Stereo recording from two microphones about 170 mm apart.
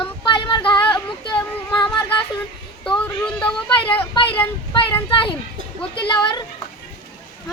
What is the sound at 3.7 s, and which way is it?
A child's voice, 30° left (ahead or behind).